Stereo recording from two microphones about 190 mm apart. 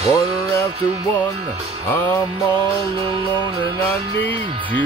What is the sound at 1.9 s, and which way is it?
Music, 10° left (ahead or behind).